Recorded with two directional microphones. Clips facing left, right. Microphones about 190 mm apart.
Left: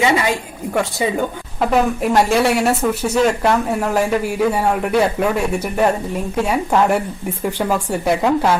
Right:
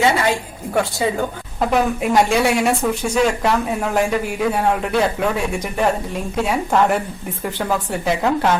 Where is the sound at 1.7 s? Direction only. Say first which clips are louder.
Left 1 dB; centre (ahead or behind).